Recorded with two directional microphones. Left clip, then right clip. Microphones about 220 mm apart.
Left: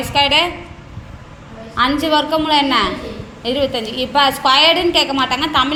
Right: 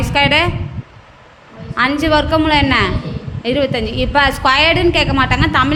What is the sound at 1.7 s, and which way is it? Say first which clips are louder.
A woman's voice: right 1 dB; 30° right (ahead or behind).